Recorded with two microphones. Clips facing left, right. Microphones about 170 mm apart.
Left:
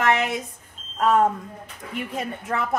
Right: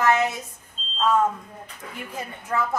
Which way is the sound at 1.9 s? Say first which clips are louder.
Left 6 dB; 70° left (ahead or behind).